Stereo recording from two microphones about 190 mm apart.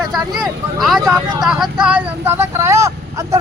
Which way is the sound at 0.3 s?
Centre (ahead or behind).